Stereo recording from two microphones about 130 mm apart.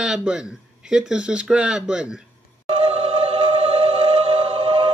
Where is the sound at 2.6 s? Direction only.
50° right (ahead or behind).